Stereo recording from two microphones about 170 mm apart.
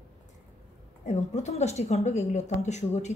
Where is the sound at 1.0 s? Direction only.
45° left (ahead or behind).